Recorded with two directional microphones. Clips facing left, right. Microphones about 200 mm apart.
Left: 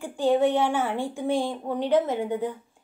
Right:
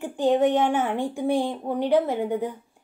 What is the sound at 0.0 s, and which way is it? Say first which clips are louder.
A woman's voice: right 1 dB; 20° right (ahead or behind).